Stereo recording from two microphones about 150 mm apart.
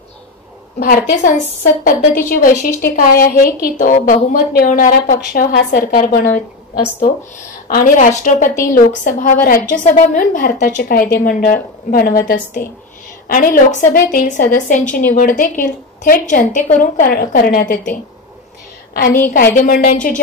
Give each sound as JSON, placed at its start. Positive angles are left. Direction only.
{"t": 0.7, "sound": "a woman's voice", "side_deg": 80}
{"t": 7.7, "sound": "a woman's voice", "side_deg": 60}
{"t": 13.3, "sound": "a woman's voice", "side_deg": 70}
{"t": 16.8, "sound": "a woman's voice", "side_deg": 75}
{"t": 18.9, "sound": "a woman's voice", "side_deg": 65}